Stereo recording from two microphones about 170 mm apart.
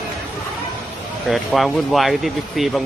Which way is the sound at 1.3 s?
Centre (ahead or behind).